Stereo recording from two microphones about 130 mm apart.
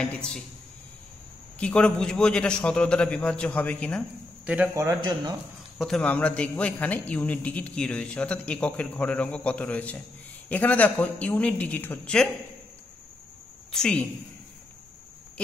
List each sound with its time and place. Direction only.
0.0 s a man's voice: 5° left (ahead or behind)
1.6 s a man's voice: 10° left (ahead or behind)
4.7 s a man's voice: 25° right (ahead or behind)
5.8 s a man's voice: 5° left (ahead or behind)
13.7 s a woman's voice: 5° left (ahead or behind)